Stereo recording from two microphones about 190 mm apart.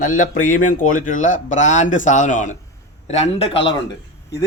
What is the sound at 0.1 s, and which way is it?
Speech, 40° left (ahead or behind).